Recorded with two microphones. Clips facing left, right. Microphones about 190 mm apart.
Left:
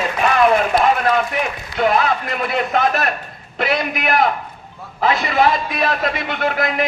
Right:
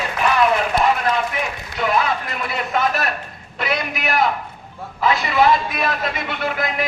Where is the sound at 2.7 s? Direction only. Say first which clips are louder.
Even; 50° left (ahead or behind).